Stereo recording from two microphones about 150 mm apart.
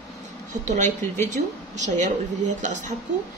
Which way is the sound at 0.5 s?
55° right (ahead or behind).